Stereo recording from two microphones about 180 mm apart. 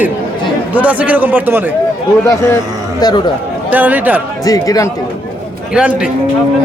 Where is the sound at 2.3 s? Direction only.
20° left (ahead or behind).